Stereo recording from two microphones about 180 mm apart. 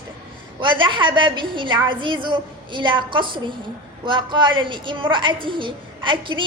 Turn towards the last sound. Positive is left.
turn(degrees=-25)  # may be behind; listen again after turning